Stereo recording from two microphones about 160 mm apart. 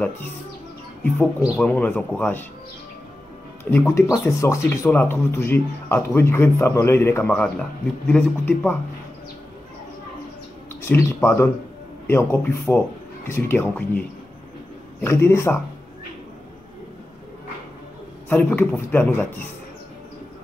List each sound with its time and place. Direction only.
1.0 s speech: 10° left (ahead or behind)
3.7 s speech: 15° left (ahead or behind)
10.8 s speech: 15° left (ahead or behind)
18.3 s speech: 10° left (ahead or behind)